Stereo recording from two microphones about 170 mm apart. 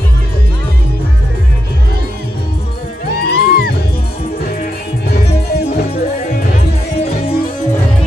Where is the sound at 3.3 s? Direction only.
65° left (ahead or behind).